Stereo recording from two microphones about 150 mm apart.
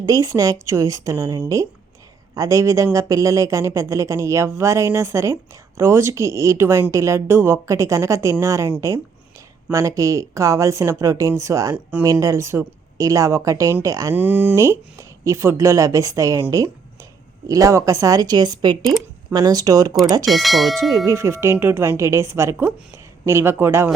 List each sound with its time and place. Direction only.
0.0 s speech: 25° right (ahead or behind)
9.7 s speech: 20° right (ahead or behind)
14.2 s speech: 10° right (ahead or behind)
20.2 s speech: centre (ahead or behind)
20.9 s speech: 20° right (ahead or behind)